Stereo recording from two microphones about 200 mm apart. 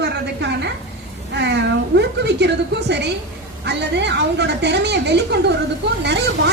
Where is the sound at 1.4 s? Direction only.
60° right (ahead or behind).